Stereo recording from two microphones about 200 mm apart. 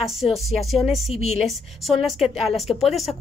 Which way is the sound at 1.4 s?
Centre (ahead or behind).